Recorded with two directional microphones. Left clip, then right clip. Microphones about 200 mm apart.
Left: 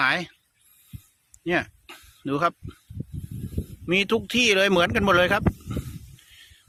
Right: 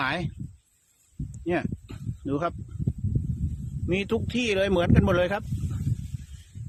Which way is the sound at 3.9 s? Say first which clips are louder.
Left 5 dB; 5° left (ahead or behind).